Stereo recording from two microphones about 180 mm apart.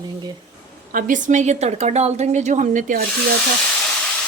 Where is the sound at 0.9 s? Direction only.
45° right (ahead or behind).